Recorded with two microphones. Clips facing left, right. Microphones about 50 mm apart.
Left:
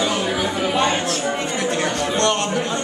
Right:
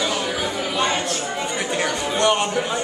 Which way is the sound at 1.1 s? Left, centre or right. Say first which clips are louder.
Left 3 dB; centre.